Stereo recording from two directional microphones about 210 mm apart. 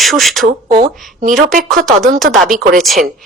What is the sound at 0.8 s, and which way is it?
Speech, 40° right (ahead or behind).